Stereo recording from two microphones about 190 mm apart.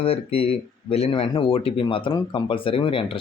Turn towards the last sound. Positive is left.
turn(degrees=30)  # may be behind; listen again after turning